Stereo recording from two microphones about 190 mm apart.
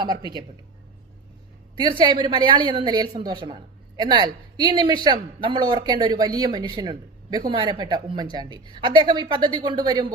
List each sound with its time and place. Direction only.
0.0 s a woman's voice: 20° right (ahead or behind)
2.0 s a woman's voice: 25° right (ahead or behind)